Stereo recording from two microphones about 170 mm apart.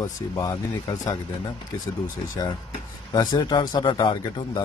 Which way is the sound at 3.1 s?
25° left (ahead or behind).